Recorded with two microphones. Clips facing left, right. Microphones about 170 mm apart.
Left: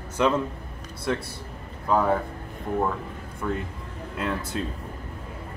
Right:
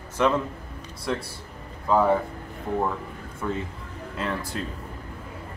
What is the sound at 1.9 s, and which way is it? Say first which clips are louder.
Speech: right 2 dB; centre (ahead or behind).